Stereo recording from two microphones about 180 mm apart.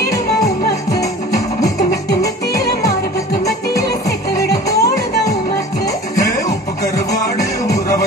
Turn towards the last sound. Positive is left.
turn(degrees=20)  # may be behind; listen again after turning